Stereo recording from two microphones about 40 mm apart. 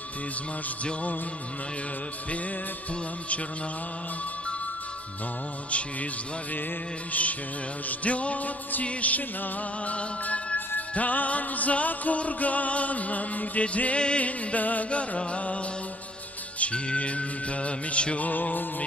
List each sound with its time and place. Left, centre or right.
7.1 s music: left
18.2 s music: left